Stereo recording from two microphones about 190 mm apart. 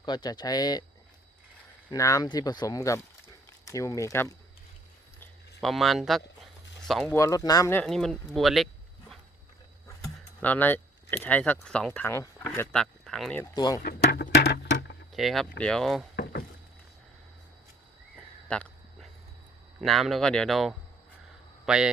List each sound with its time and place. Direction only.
0.0 s speech: 20° left (ahead or behind)
1.9 s speech: 15° left (ahead or behind)
5.5 s a sound: centre (ahead or behind)
7.1 s speech: 15° left (ahead or behind)
7.9 s speech: centre (ahead or behind)
10.4 s speech: 10° left (ahead or behind)
13.4 s speech: 20° left (ahead or behind)
14.0 s a sound: 60° left (ahead or behind)
15.1 s speech: centre (ahead or behind)
16.1 s rowboat: 50° left (ahead or behind)
18.4 s a sound: 5° left (ahead or behind)
19.8 s speech: centre (ahead or behind)